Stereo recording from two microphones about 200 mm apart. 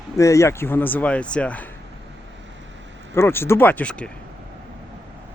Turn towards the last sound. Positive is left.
turn(degrees=5)  # may be behind; listen again after turning